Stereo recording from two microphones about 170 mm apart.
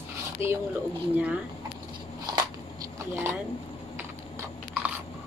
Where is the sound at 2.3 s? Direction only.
25° right (ahead or behind).